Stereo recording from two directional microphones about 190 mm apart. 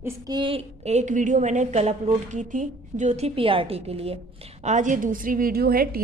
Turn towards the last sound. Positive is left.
turn(degrees=-50)  # may be behind; listen again after turning